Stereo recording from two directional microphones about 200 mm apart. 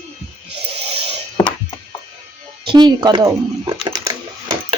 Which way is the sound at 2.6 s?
20° right (ahead or behind).